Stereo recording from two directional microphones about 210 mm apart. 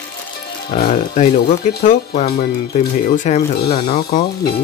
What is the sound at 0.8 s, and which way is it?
Speech, 35° left (ahead or behind).